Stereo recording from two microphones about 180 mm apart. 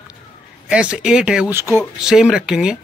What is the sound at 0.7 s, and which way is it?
A man's voice, 5° right (ahead or behind).